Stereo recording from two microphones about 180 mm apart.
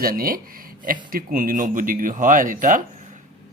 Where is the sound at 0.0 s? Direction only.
55° right (ahead or behind).